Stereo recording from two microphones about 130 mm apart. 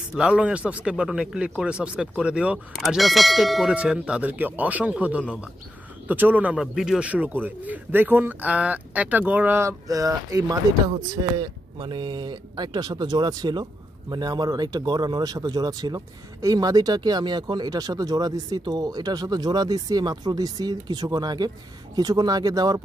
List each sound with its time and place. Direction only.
0.1 s speech: 5° right (ahead or behind); by 10.6 s 25° right (ahead or behind)
11.8 s speech: 35° right (ahead or behind)